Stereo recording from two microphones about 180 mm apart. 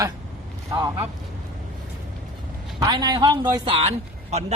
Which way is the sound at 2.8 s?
20° right (ahead or behind).